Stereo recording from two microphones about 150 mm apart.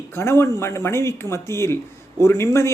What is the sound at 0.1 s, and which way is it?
A man's voice, 15° left (ahead or behind).